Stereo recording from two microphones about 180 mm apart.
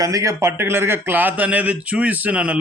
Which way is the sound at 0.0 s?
20° right (ahead or behind).